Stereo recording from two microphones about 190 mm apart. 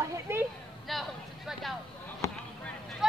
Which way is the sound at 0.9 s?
Centre (ahead or behind).